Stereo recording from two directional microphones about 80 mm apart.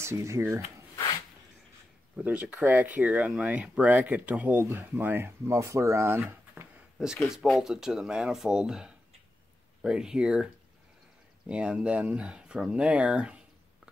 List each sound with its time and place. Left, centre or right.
0.0 s speech: right
2.1 s speech: centre
5.6 s speech: right
6.5 s a sound: centre
7.4 s speech: centre